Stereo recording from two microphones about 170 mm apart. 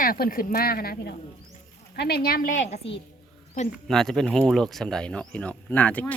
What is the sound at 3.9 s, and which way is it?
Speech, 5° left (ahead or behind).